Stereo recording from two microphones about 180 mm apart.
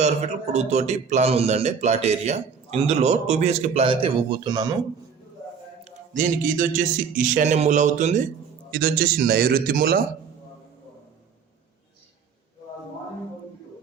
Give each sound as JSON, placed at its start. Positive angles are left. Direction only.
{"t": 0.0, "sound": "a man's voice", "side_deg": -40}
{"t": 5.8, "sound": "speech", "side_deg": -50}
{"t": 8.7, "sound": "a man's voice", "side_deg": -55}